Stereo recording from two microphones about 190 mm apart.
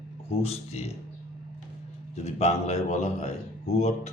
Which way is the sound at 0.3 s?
35° left (ahead or behind).